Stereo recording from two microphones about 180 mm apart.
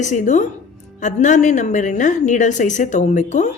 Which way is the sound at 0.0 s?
40° left (ahead or behind).